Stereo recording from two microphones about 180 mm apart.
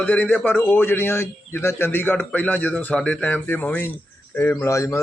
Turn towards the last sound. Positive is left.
turn(degrees=15)  # may be behind; listen again after turning